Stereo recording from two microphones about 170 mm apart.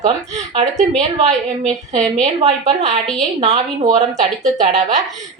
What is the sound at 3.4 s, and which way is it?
A woman's voice, 35° right (ahead or behind).